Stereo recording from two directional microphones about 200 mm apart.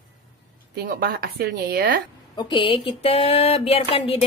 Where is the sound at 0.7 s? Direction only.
50° right (ahead or behind).